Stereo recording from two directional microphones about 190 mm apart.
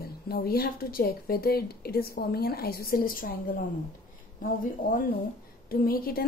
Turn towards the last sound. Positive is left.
turn(degrees=50)  # may be behind; listen again after turning